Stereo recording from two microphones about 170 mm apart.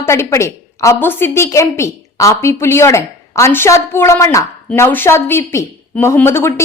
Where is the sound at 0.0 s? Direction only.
15° left (ahead or behind).